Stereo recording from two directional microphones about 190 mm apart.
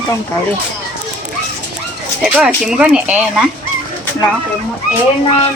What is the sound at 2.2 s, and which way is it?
Speech, 5° right (ahead or behind).